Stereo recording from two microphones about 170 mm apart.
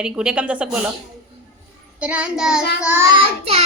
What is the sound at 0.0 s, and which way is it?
Speech, 5° right (ahead or behind).